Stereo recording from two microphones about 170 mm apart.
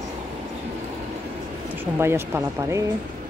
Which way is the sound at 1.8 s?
15° right (ahead or behind).